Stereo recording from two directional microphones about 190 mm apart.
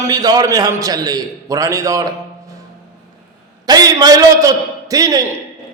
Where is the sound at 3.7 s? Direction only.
20° right (ahead or behind).